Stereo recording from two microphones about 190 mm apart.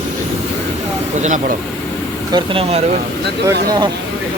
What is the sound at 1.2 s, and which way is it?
Speech, 40° right (ahead or behind).